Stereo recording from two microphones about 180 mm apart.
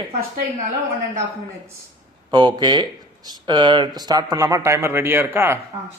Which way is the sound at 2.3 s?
25° right (ahead or behind).